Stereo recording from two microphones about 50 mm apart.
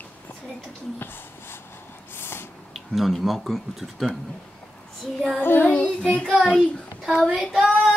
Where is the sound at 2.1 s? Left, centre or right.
Left.